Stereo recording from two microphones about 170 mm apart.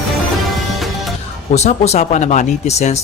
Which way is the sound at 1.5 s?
40° left (ahead or behind).